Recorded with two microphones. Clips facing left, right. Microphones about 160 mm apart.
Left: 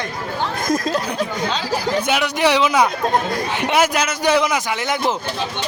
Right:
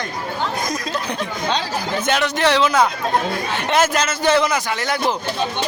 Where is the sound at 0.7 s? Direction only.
45° left (ahead or behind).